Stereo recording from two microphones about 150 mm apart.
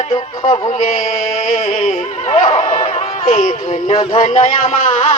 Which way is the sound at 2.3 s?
45° left (ahead or behind).